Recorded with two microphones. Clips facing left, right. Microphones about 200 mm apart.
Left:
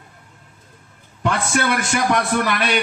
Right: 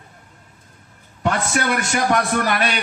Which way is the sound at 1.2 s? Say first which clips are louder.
Even; 45° right (ahead or behind).